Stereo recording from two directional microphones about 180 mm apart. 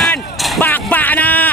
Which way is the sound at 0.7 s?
10° left (ahead or behind).